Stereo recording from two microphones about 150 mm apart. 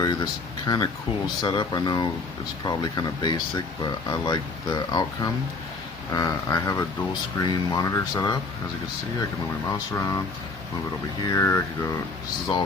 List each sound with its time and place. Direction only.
0.0 s speech: 25° left (ahead or behind)
9.6 s speech: 20° left (ahead or behind)
11.2 s speech: 20° left (ahead or behind)